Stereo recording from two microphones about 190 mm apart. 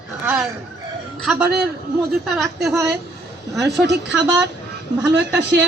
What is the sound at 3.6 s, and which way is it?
Speech, 65° right (ahead or behind).